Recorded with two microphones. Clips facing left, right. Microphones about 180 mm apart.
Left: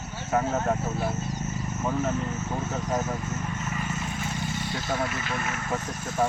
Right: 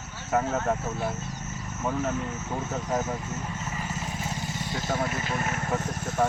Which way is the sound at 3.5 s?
30° right (ahead or behind).